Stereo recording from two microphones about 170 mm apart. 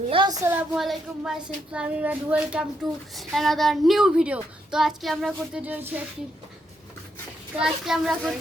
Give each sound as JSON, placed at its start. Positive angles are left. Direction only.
{"t": 0.1, "sound": "a sound", "side_deg": -30}
{"t": 0.4, "sound": "a woman's voice", "side_deg": -10}
{"t": 7.6, "sound": "a woman's voice", "side_deg": 0}